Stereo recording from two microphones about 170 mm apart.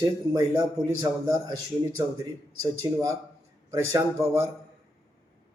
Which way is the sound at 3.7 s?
20° right (ahead or behind).